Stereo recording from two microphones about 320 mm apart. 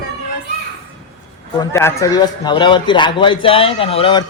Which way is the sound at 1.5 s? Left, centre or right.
Centre.